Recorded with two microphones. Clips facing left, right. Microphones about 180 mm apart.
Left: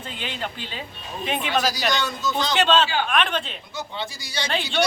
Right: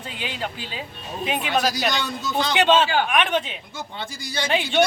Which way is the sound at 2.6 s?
15° right (ahead or behind).